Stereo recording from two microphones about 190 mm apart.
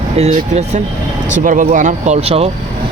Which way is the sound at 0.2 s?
35° right (ahead or behind).